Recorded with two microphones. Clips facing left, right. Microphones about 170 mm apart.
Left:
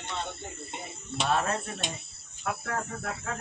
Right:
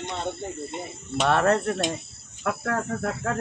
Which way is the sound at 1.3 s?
65° right (ahead or behind).